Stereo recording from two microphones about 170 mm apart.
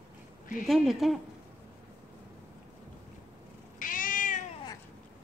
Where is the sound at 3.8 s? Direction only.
55° left (ahead or behind).